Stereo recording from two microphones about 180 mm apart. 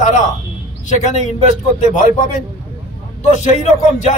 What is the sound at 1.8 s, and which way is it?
Speech, 45° left (ahead or behind).